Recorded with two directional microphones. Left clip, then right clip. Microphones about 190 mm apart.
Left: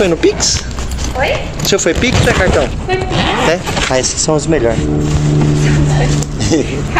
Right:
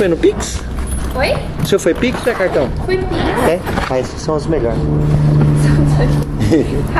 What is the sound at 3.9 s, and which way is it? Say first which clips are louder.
Speech: left 5 dB; 45° left (ahead or behind).